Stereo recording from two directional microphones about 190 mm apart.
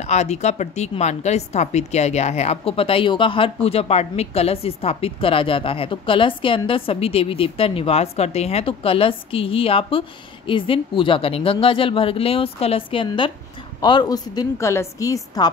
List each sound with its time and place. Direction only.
0.0 s a woman's voice: 35° left (ahead or behind); by 15.5 s 20° left (ahead or behind)